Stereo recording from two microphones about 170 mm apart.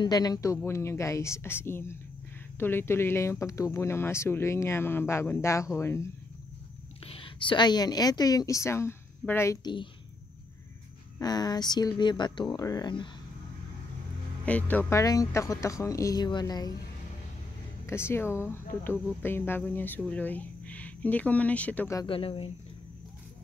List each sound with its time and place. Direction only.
0.0 s speech: 20° left (ahead or behind)
7.1 s a woman's voice: 30° left (ahead or behind)
11.1 s speech: 20° left (ahead or behind)
14.4 s speech: 10° left (ahead or behind)
17.8 s speech: 15° left (ahead or behind)
22.0 s speech: 30° left (ahead or behind)